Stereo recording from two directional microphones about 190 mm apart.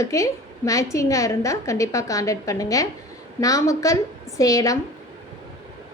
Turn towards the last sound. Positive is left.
turn(degrees=20)  # may be behind; listen again after turning